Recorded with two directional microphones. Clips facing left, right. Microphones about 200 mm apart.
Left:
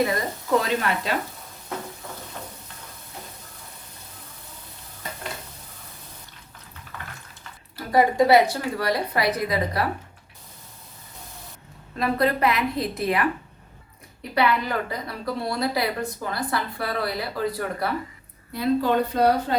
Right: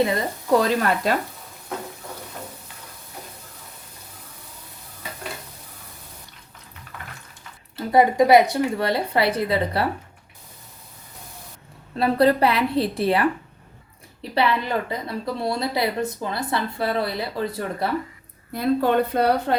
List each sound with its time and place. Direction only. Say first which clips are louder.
0.6 s speech: right 4 dB; 45° right (ahead or behind)
7.8 s a woman's voice: right 2 dB; 20° right (ahead or behind)
11.9 s a woman's voice: right 5 dB; 30° right (ahead or behind)
14.3 s a woman's voice: right 1 dB; 25° right (ahead or behind)
18.5 s speech: right 2 dB; 55° right (ahead or behind)